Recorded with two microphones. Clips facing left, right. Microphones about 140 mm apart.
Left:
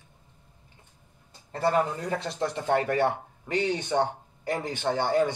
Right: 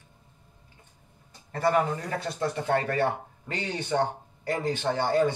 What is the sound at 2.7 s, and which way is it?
Speech, 15° left (ahead or behind).